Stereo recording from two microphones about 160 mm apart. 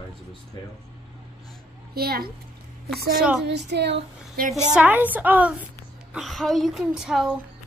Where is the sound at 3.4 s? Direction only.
90° right.